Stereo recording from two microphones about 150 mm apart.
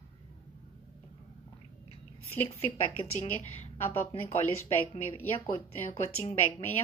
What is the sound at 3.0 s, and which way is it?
Speech, 45° left (ahead or behind).